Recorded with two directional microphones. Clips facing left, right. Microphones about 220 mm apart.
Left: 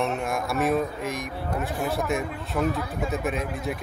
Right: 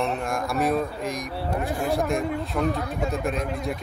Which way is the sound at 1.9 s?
Centre (ahead or behind).